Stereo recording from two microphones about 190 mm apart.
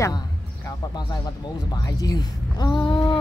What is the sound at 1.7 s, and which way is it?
Speech, 20° left (ahead or behind).